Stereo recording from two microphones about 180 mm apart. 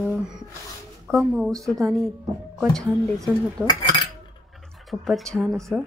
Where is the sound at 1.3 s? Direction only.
Centre (ahead or behind).